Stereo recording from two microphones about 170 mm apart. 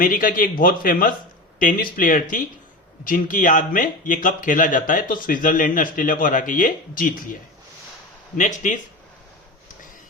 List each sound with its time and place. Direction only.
0.0 s a man's voice: 55° left (ahead or behind)
8.4 s a man's voice: 45° left (ahead or behind)